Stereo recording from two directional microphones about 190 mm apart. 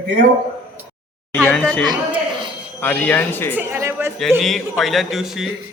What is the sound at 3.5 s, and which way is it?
Speech, 15° right (ahead or behind).